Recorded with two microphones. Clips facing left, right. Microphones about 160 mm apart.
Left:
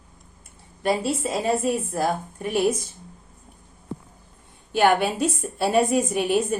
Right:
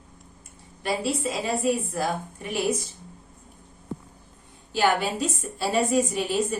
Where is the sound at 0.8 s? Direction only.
50° left (ahead or behind).